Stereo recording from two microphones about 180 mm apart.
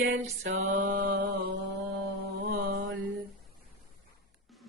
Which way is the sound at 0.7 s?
50° right (ahead or behind).